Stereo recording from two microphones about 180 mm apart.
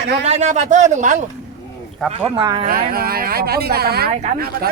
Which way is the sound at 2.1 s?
30° right (ahead or behind).